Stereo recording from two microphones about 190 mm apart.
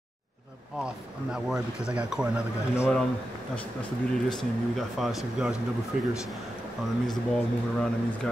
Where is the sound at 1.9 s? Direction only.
5° right (ahead or behind).